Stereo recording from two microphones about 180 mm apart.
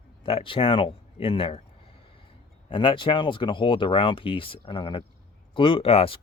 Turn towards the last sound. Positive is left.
turn(degrees=30)  # may be behind; listen again after turning